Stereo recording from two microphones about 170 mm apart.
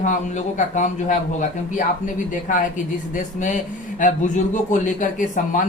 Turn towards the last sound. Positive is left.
turn(degrees=45)  # may be behind; listen again after turning